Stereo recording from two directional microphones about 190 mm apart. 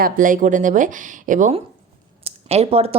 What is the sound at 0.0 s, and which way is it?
A woman's voice, 45° right (ahead or behind).